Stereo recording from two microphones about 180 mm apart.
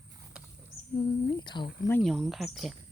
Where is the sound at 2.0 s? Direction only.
Centre (ahead or behind).